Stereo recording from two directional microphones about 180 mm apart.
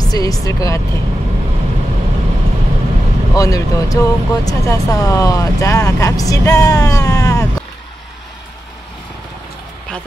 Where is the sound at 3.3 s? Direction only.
20° left (ahead or behind).